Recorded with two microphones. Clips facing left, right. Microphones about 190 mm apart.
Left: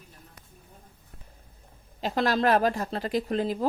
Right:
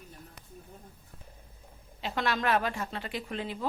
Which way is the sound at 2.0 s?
40° left (ahead or behind).